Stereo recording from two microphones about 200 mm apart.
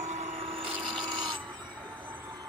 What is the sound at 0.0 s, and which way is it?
Vehicle, 35° right (ahead or behind).